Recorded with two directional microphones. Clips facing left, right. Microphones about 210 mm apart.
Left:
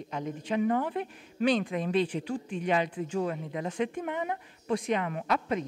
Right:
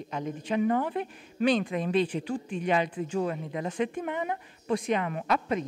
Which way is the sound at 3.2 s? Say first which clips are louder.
Right 1 dB; 20° right (ahead or behind).